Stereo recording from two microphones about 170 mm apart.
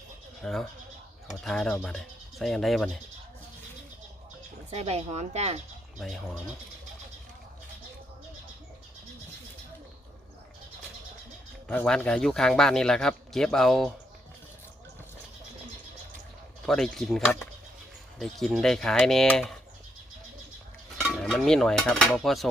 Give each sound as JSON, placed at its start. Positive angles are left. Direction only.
{"t": 0.4, "sound": "speech", "side_deg": 5}
{"t": 4.7, "sound": "a woman's voice", "side_deg": -40}
{"t": 6.0, "sound": "speech", "side_deg": 0}
{"t": 11.7, "sound": "speech", "side_deg": 10}
{"t": 16.6, "sound": "speech", "side_deg": 0}
{"t": 21.0, "sound": "dishes", "side_deg": 0}